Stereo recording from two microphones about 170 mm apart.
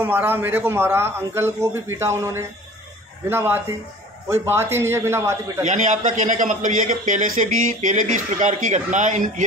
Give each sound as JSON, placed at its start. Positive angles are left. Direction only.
{"t": 0.0, "sound": "a man's voice", "side_deg": -10}
{"t": 5.6, "sound": "a man's voice", "side_deg": -45}